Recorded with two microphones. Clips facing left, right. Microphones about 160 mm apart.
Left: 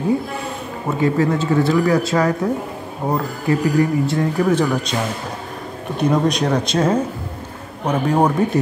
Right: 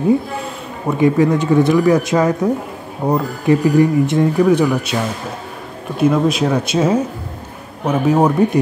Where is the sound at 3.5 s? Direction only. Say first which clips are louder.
Right 4 dB; 20° right (ahead or behind).